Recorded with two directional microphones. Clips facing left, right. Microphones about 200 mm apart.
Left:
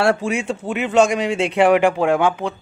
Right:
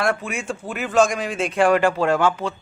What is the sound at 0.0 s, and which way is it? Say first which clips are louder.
A man's voice: left 5 dB; 30° left (ahead or behind).